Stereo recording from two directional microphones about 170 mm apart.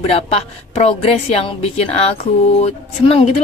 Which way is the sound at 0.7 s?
35° left (ahead or behind).